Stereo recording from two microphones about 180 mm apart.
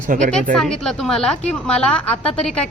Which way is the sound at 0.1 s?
45° right (ahead or behind).